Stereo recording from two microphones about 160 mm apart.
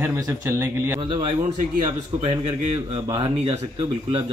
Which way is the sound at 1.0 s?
30° right (ahead or behind).